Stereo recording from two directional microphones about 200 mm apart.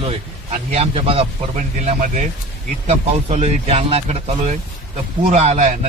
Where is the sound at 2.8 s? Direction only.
35° right (ahead or behind).